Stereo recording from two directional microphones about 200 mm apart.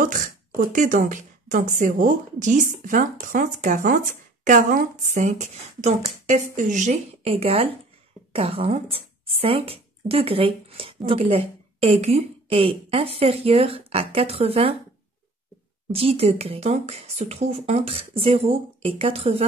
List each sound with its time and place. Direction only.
0.0 s speech: 40° right (ahead or behind)
15.9 s speech: 30° right (ahead or behind)